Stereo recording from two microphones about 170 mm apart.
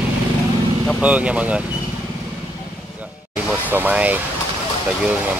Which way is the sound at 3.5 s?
10° right (ahead or behind).